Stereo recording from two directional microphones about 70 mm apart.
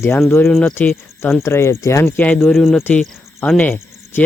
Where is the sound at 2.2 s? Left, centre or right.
Left.